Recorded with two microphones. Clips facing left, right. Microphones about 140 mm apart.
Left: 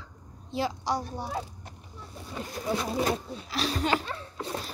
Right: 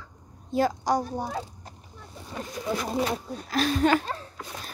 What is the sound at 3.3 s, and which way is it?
Speech, 45° right (ahead or behind).